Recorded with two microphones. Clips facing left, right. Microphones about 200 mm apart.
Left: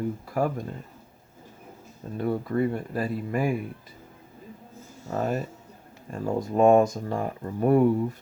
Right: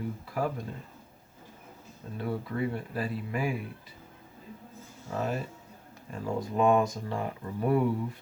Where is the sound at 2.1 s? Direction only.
45° left (ahead or behind).